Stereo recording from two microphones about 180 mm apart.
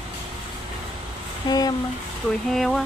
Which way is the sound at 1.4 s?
20° left (ahead or behind).